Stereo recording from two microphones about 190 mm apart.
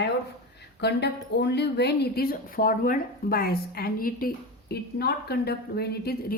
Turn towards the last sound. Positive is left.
turn(degrees=55)  # may be behind; listen again after turning